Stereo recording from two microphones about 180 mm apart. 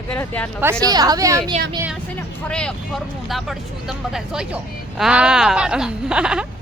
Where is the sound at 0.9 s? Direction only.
20° right (ahead or behind).